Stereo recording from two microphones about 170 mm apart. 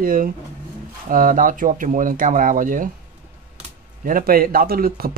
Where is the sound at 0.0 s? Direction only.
55° right (ahead or behind).